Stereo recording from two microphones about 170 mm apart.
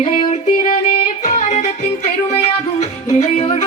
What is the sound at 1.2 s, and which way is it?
Music, 45° left (ahead or behind).